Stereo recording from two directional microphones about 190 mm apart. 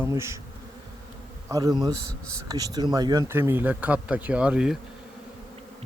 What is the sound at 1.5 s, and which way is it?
A man's voice, 20° right (ahead or behind).